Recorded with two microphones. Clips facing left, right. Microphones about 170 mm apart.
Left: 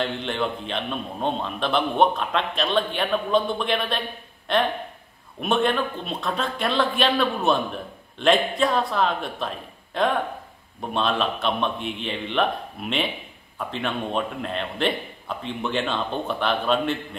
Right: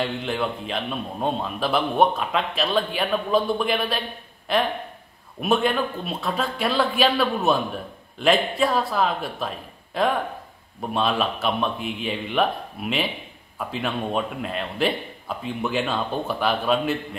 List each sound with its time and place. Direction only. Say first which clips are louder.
0.0 s a man's voice: even; 5° right (ahead or behind)
13.6 s a man's voice: right 1 dB; 5° right (ahead or behind)